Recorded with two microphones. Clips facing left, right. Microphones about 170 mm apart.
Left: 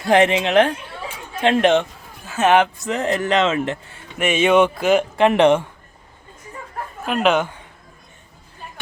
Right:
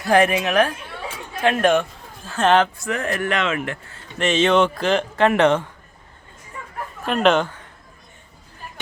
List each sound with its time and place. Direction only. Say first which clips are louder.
0.0 s a man's voice: left 2 dB; 20° left (ahead or behind)
2.3 s speech: left 1 dB; 10° left (ahead or behind)
2.8 s a man's voice: left 3 dB; 20° left (ahead or behind)
3.9 s speech: right 2 dB; 10° left (ahead or behind)
7.0 s speech: right 1 dB; 5° left (ahead or behind)